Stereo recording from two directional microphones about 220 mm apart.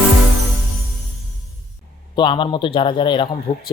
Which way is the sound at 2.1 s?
20° left (ahead or behind).